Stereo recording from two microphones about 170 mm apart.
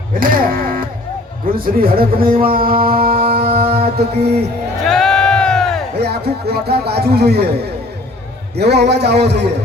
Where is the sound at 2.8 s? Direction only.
60° right (ahead or behind).